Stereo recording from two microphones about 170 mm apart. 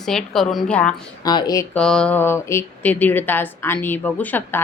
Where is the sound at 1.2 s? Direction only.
25° left (ahead or behind).